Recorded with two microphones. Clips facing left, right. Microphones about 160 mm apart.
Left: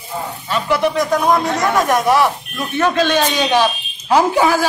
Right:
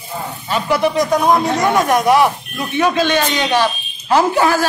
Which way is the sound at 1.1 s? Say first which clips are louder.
Right 1 dB; 25° right (ahead or behind).